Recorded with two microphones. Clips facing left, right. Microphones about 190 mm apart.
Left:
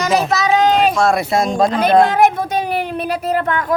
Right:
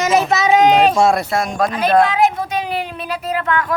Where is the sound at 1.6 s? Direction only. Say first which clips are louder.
Left 2 dB; 20° left (ahead or behind).